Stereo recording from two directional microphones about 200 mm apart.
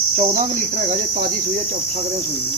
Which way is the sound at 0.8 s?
40° right (ahead or behind).